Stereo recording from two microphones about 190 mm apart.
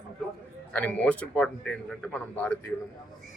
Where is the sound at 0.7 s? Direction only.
5° left (ahead or behind).